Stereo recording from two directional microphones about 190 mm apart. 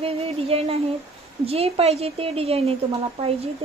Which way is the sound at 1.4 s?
30° right (ahead or behind).